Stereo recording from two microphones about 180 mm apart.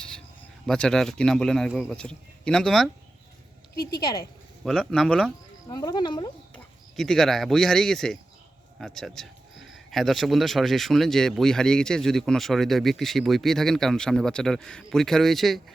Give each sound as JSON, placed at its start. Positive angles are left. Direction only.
{"t": 0.7, "sound": "speech", "side_deg": 5}
{"t": 4.6, "sound": "speech", "side_deg": 5}
{"t": 5.6, "sound": "speech", "side_deg": 20}
{"t": 6.5, "sound": "speech", "side_deg": 0}